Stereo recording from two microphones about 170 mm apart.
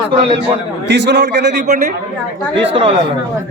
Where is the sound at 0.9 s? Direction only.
90° right.